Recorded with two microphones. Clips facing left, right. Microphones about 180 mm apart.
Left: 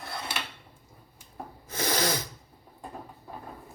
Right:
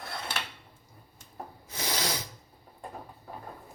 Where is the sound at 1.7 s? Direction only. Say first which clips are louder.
Left 6 dB; 50° left (ahead or behind).